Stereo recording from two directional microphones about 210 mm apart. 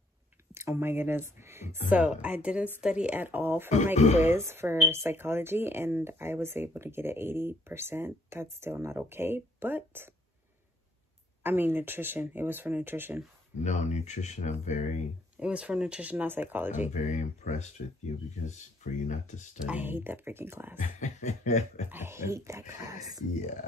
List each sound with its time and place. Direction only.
0.6 s speech: 10° right (ahead or behind)
3.7 s speech: 35° left (ahead or behind)
4.2 s speech: 10° right (ahead or behind)
11.4 s speech: 10° right (ahead or behind)
13.7 s speech: 35° left (ahead or behind)
15.3 s speech: 5° right (ahead or behind)
16.9 s speech: 35° left (ahead or behind)
18.9 s speech: 35° left (ahead or behind)
19.6 s speech: 10° right (ahead or behind)
20.7 s speech: 35° left (ahead or behind)
21.9 s speech: 10° right (ahead or behind)